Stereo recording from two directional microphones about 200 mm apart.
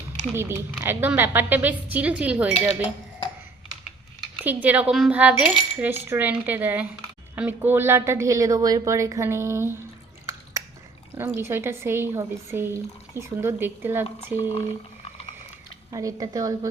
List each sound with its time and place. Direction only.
0.3 s speech: 10° right (ahead or behind)
4.4 s speech: 10° right (ahead or behind)
11.1 s speech: 10° right (ahead or behind)
15.9 s speech: 15° right (ahead or behind)